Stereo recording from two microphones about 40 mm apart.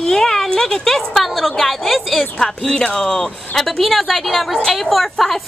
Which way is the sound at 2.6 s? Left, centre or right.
Centre.